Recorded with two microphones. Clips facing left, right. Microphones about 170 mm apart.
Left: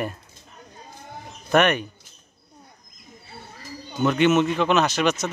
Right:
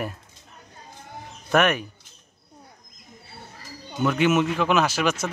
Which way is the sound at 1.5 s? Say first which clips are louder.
Left 2 dB; 5° right (ahead or behind).